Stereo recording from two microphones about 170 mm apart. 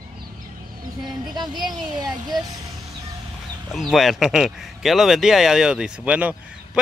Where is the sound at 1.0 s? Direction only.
25° right (ahead or behind).